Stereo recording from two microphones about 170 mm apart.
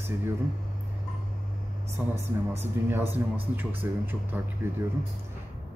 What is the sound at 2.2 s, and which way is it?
Speech, 15° right (ahead or behind).